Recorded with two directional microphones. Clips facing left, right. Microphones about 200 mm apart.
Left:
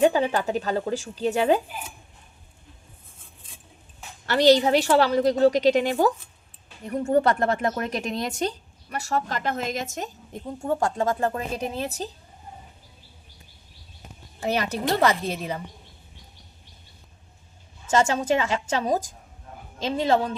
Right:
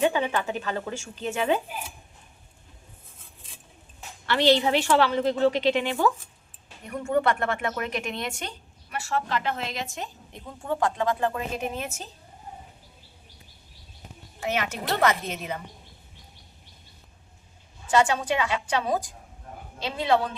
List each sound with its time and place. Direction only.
0.0 s speech: 35° left (ahead or behind)
4.3 s speech: 40° left (ahead or behind)
14.4 s speech: 35° left (ahead or behind)
17.9 s speech: 40° left (ahead or behind)